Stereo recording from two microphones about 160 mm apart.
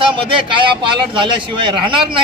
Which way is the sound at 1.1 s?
30° right (ahead or behind).